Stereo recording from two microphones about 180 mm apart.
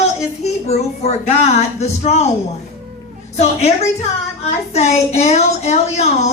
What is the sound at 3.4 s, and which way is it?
A woman's voice, 35° left (ahead or behind).